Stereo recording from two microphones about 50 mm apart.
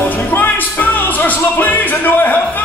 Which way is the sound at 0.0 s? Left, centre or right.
Left.